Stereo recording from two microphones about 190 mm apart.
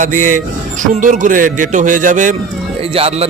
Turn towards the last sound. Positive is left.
turn(degrees=-30)  # may be behind; listen again after turning